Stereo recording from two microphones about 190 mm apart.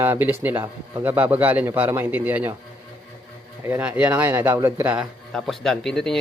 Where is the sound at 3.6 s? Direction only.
10° right (ahead or behind).